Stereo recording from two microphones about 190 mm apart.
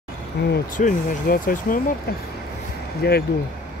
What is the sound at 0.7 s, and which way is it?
Speech, 45° left (ahead or behind).